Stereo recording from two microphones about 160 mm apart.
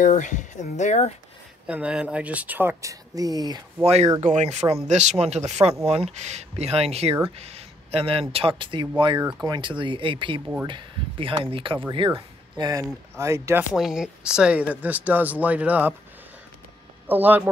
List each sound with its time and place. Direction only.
0.0 s speech: 50° left (ahead or behind)
1.7 s speech: 5° right (ahead or behind); by 3.9 s 25° right (ahead or behind)
4.2 s speech: 50° right (ahead or behind); by 13.7 s 15° right (ahead or behind)
13.7 s speech: 5° right (ahead or behind)
17.1 s speech: 10° right (ahead or behind)